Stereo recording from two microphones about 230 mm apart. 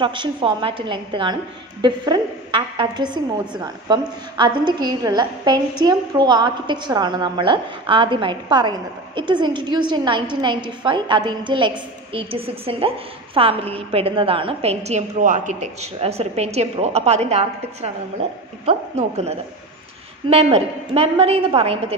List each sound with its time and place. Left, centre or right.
0.0 s a woman's voice: right